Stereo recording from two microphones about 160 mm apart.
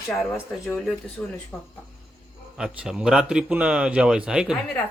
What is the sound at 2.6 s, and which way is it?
A man's voice, 5° right (ahead or behind).